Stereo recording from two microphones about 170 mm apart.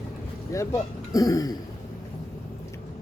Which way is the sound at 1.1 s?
20° left (ahead or behind).